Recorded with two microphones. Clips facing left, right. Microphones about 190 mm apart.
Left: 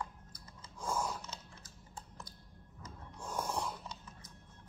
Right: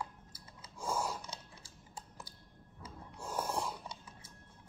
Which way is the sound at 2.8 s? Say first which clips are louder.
Right 1 dB; 10° right (ahead or behind).